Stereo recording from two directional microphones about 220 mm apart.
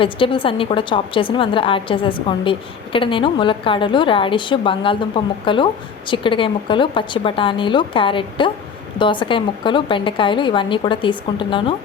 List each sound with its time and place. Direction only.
0.0 s a woman's voice: 25° left (ahead or behind)